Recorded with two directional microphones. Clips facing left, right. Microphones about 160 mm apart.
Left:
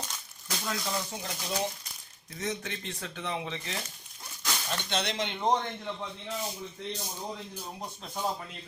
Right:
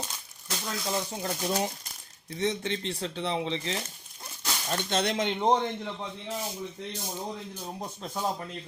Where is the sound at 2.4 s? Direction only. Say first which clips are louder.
Right 6 dB; 30° right (ahead or behind).